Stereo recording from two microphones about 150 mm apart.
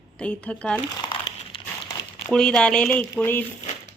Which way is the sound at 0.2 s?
10° left (ahead or behind).